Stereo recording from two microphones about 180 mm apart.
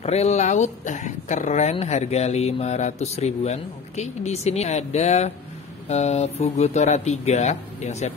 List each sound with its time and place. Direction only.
0.0 s speech: 35° left (ahead or behind)